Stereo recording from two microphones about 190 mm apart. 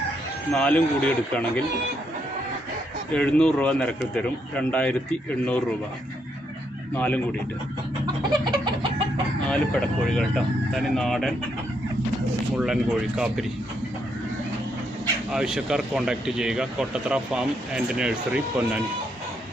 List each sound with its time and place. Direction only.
0.5 s speech: 5° left (ahead or behind)
3.1 s speech: 5° left (ahead or behind)
6.9 s speech: 10° left (ahead or behind)
8.3 s a sound: 20° right (ahead or behind)
9.5 s speech: 5° left (ahead or behind)
12.5 s speech: 5° right (ahead or behind)
15.3 s speech: 5° right (ahead or behind)